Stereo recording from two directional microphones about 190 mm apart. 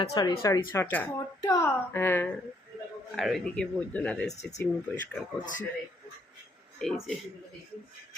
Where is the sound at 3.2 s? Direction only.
Centre (ahead or behind).